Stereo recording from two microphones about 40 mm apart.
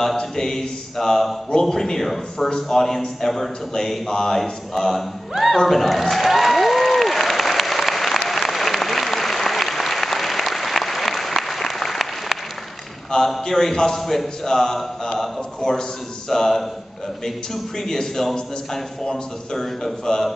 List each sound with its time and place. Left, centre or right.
0.2 s a man's voice: centre
5.7 s applause: centre
13.3 s a man's voice: centre
15.6 s a man's voice: left
16.3 s a man's voice: centre
17.7 s a man's voice: centre